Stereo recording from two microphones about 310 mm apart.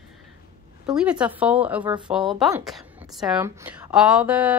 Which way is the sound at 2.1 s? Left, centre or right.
Centre.